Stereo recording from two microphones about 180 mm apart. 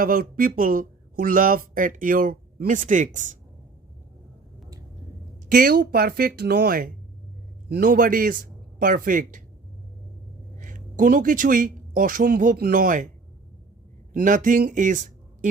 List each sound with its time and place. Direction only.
0.0 s speech: 50° right (ahead or behind)
5.5 s a man's voice: 55° right (ahead or behind)
10.6 s speech: 45° right (ahead or behind)
14.1 s speech: 45° right (ahead or behind)